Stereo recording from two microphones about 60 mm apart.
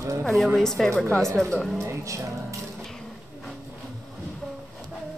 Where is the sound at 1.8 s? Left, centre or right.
Right.